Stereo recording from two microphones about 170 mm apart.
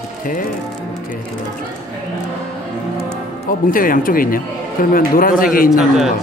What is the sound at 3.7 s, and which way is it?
Speech, 55° left (ahead or behind).